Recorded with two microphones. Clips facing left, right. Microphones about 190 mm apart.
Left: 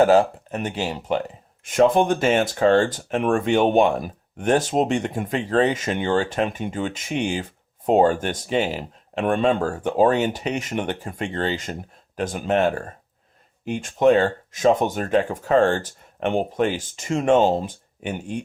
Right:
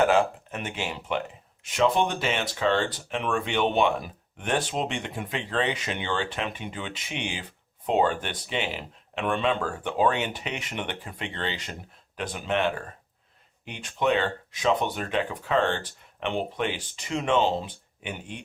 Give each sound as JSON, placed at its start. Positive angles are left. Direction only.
{"t": 0.0, "sound": "speech", "side_deg": 40}
{"t": 1.6, "sound": "speech", "side_deg": 50}